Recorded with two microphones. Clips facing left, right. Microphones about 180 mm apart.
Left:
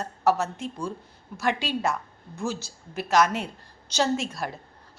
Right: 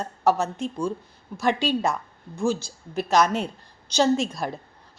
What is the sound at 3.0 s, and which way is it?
A woman's voice, 20° right (ahead or behind).